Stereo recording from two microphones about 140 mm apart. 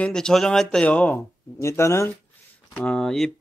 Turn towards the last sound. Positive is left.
turn(degrees=5)  # may be behind; listen again after turning